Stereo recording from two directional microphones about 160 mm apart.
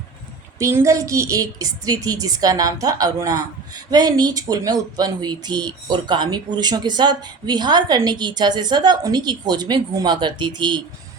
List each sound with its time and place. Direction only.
0.6 s speech: 15° right (ahead or behind)